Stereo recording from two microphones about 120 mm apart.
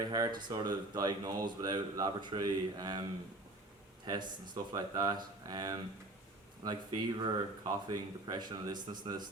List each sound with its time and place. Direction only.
0.0 s speech: 30° right (ahead or behind)